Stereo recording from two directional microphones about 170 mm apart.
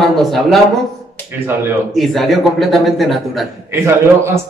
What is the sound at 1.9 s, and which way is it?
A man's voice, centre (ahead or behind).